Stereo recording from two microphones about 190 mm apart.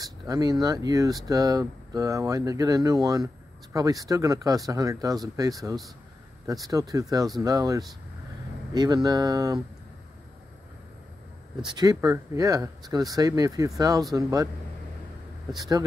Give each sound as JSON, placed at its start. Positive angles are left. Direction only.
{"t": 0.0, "sound": "speech", "side_deg": -20}
{"t": 11.6, "sound": "speech", "side_deg": -20}